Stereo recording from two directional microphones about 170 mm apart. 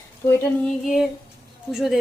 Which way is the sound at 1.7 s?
Centre (ahead or behind).